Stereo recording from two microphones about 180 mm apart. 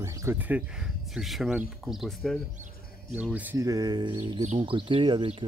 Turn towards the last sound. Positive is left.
turn(degrees=-25)  # may be behind; listen again after turning